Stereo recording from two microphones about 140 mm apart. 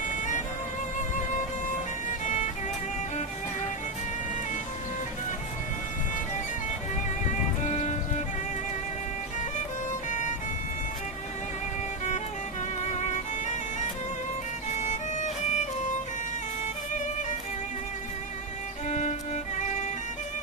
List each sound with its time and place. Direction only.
0.1 s music: 65° left (ahead or behind)
2.2 s music: 60° left (ahead or behind)
7.6 s music: 55° left (ahead or behind)
10.1 s music: 60° left (ahead or behind)
12.8 s music: 55° left (ahead or behind)
14.8 s music: 60° left (ahead or behind)
18.9 s music: 55° left (ahead or behind)